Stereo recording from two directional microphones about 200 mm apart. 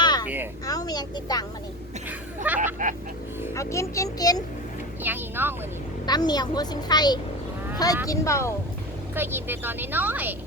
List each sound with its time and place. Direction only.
0.0 s a sound: 20° left (ahead or behind)
0.6 s a woman's voice: 20° left (ahead or behind)
2.0 s a sound: 10° right (ahead or behind)
2.8 s vehicle: 40° right (ahead or behind)
3.5 s a child's voice: 15° left (ahead or behind)
5.0 s a woman's voice: 10° right (ahead or behind)
6.1 s a woman's voice: 20° left (ahead or behind)
9.1 s a woman's voice: 10° right (ahead or behind)